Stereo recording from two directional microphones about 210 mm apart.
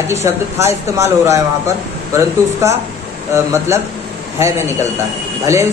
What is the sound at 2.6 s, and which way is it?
Speech, 15° right (ahead or behind).